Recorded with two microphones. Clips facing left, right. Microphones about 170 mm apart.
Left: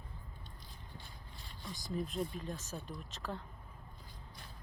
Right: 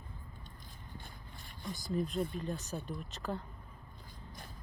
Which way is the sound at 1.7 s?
Centre (ahead or behind).